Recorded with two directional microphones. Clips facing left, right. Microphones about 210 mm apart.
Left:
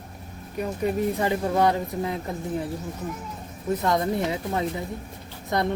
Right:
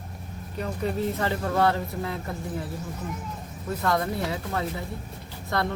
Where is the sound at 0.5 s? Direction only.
10° left (ahead or behind).